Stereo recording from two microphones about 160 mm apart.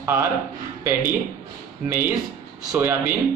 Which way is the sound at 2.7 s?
15° right (ahead or behind).